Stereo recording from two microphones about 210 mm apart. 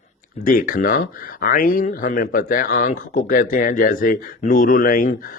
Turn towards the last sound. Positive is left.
turn(degrees=40)  # may be behind; listen again after turning